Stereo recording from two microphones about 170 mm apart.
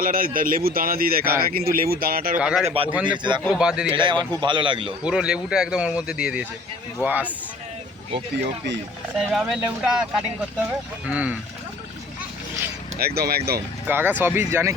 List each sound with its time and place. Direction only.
0.0 s speech: 55° right (ahead or behind)
2.4 s speech: 5° right (ahead or behind)
2.6 s speech: 35° right (ahead or behind)
2.9 s speech: 5° right (ahead or behind)
3.9 s speech: 25° right (ahead or behind)
5.0 s speech: 5° right (ahead or behind)
9.3 s speech: centre (ahead or behind)
13.0 s speech: 65° right (ahead or behind)
13.8 s speech: 10° right (ahead or behind)